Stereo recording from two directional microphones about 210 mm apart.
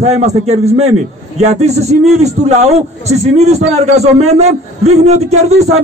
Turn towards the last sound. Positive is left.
turn(degrees=-30)  # may be behind; listen again after turning